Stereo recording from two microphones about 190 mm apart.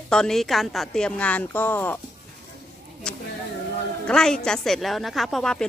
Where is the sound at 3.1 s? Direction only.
5° left (ahead or behind).